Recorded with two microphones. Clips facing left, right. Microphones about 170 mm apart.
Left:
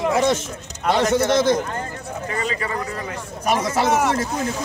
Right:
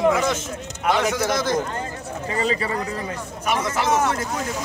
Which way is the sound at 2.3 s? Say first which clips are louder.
Right 3 dB; 30° right (ahead or behind).